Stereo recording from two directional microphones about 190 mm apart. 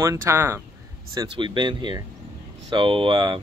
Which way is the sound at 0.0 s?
15° right (ahead or behind).